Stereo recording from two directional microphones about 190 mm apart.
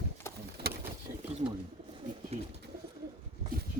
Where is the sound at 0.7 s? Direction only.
55° right (ahead or behind).